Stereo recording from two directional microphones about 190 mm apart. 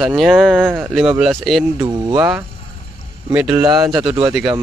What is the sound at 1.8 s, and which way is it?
Speech, 20° right (ahead or behind).